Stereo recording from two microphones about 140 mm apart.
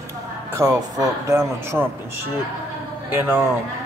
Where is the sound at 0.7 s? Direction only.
25° right (ahead or behind).